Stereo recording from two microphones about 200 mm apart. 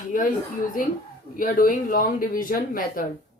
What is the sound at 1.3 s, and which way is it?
Speech, 45° left (ahead or behind).